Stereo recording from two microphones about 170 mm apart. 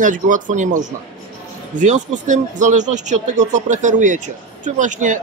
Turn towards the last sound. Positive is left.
turn(degrees=-50)  # may be behind; listen again after turning